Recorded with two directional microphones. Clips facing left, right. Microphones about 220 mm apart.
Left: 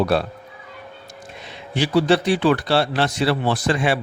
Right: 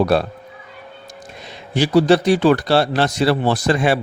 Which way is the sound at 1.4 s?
40° right (ahead or behind).